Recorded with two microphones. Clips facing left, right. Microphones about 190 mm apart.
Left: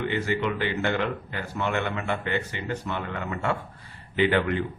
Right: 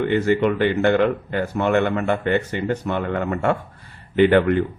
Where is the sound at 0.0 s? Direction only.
50° right (ahead or behind).